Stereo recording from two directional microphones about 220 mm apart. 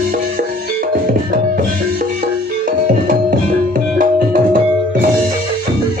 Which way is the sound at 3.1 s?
40° right (ahead or behind).